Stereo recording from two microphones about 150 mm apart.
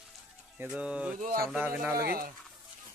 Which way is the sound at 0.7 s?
5° right (ahead or behind).